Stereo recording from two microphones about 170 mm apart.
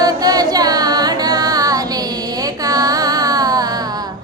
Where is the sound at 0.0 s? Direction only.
20° right (ahead or behind).